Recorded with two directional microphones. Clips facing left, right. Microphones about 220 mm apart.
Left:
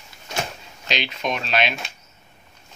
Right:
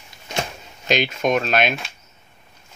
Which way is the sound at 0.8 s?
50° right (ahead or behind).